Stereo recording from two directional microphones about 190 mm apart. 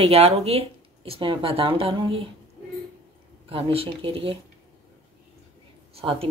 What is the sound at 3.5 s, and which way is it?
Speech, 30° right (ahead or behind).